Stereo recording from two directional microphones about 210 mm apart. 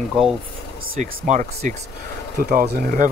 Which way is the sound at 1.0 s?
35° right (ahead or behind).